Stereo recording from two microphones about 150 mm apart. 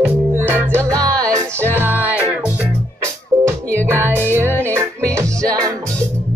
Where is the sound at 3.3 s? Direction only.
20° right (ahead or behind).